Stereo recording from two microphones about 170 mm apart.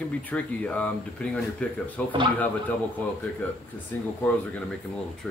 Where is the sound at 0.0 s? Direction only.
10° left (ahead or behind).